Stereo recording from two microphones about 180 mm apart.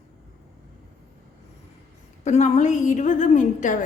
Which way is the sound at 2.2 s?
40° left (ahead or behind).